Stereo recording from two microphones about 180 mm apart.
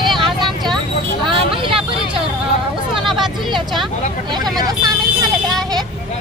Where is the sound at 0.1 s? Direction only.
Centre (ahead or behind).